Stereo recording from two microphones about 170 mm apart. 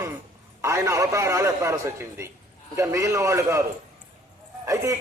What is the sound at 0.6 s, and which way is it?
A man's voice, 15° right (ahead or behind).